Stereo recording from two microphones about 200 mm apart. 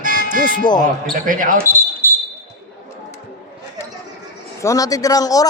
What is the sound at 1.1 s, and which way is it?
Speech, 45° right (ahead or behind).